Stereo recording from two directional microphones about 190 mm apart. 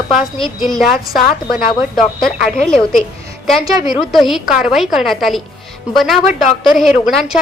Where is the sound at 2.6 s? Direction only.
5° left (ahead or behind).